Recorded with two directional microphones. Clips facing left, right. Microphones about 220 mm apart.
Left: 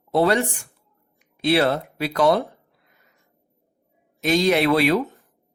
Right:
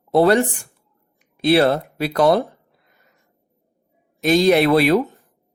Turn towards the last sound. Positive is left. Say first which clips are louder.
# right 4 dB
turn(degrees=-40)  # may be behind; listen again after turning